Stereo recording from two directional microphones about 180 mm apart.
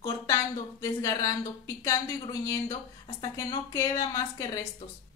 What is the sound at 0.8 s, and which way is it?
Speech, 20° left (ahead or behind).